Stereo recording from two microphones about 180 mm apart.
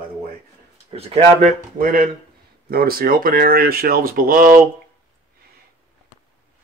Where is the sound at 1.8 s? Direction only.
55° right (ahead or behind).